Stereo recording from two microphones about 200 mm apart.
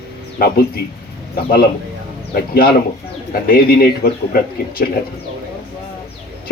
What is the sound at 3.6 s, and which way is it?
Speech, 50° left (ahead or behind).